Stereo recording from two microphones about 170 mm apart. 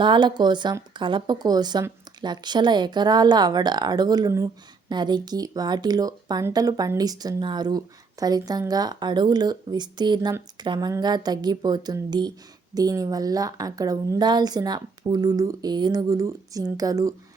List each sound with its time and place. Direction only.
0.0 s speech: 25° right (ahead or behind)